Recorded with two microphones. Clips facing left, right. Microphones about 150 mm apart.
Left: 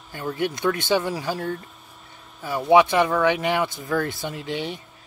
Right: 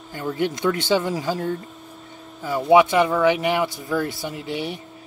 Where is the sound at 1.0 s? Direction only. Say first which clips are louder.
Right 2 dB; 20° right (ahead or behind).